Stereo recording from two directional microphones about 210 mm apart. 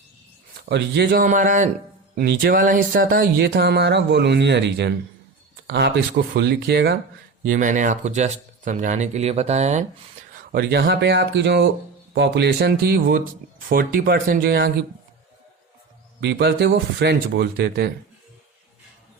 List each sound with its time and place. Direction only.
0.6 s speech: 50° right (ahead or behind)
2.1 s speech: 50° right (ahead or behind)
7.4 s speech: 40° right (ahead or behind)
10.5 s speech: 50° right (ahead or behind)
16.2 s speech: 55° right (ahead or behind)